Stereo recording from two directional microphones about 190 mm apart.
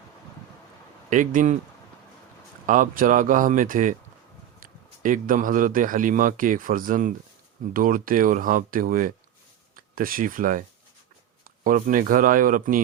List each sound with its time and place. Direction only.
1.1 s speech: 40° right (ahead or behind)
2.6 s a man's voice: 45° right (ahead or behind)